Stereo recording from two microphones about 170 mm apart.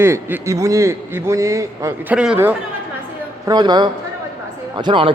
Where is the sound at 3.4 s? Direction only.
25° right (ahead or behind).